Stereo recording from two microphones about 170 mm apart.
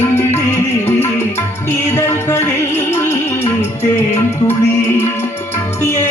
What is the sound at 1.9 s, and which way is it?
Music, 15° left (ahead or behind).